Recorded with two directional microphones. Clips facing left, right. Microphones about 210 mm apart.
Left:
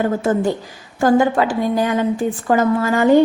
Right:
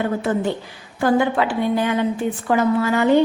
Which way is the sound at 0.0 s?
45° left (ahead or behind).